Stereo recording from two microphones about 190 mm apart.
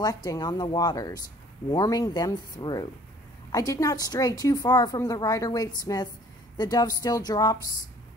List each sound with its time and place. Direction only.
0.0 s a woman's voice: 20° left (ahead or behind)